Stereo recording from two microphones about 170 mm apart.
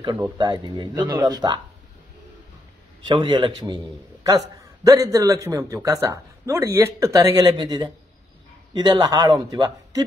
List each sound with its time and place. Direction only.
0.4 s speech: 25° right (ahead or behind)
3.1 s speech: 25° right (ahead or behind)